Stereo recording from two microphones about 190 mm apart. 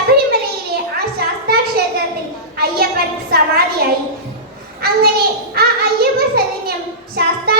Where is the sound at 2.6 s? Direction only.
55° right (ahead or behind).